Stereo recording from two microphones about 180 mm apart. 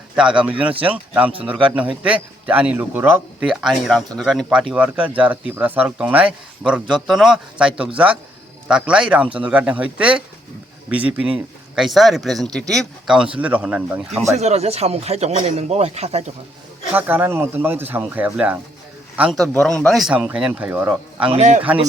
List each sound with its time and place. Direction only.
0.2 s speech: 5° right (ahead or behind)
14.3 s speech: 35° right (ahead or behind)
16.9 s speech: 10° right (ahead or behind)
21.3 s speech: 40° right (ahead or behind)